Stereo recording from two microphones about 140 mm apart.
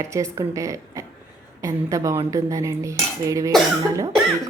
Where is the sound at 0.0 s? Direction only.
20° right (ahead or behind).